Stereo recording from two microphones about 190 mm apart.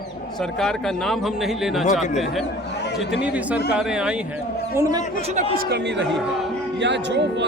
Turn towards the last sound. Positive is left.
turn(degrees=-65)  # may be behind; listen again after turning